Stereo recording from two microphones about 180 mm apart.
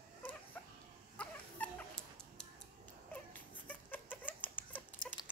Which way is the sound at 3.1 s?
10° left (ahead or behind).